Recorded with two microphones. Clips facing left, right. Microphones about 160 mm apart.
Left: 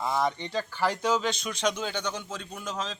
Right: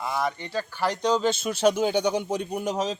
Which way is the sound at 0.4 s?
10° right (ahead or behind).